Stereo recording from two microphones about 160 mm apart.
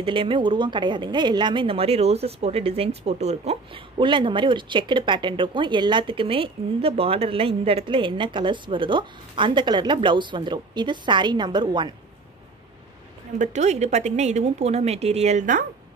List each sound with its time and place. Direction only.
0.0 s speech: 35° right (ahead or behind)
13.4 s a woman's voice: 45° right (ahead or behind)